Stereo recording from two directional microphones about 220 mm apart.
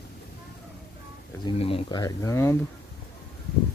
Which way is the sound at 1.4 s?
25° left (ahead or behind).